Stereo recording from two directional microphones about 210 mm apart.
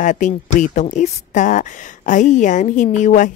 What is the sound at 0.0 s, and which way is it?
Speech, 35° left (ahead or behind).